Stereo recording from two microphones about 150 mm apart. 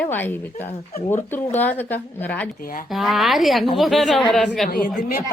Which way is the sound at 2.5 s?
70° left (ahead or behind).